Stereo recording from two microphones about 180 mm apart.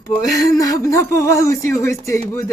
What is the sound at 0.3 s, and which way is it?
Speech, 20° left (ahead or behind).